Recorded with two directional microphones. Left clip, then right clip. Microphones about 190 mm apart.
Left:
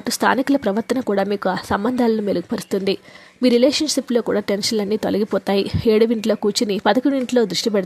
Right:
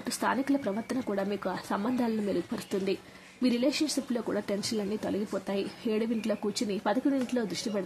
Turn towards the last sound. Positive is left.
turn(degrees=45)  # may be behind; listen again after turning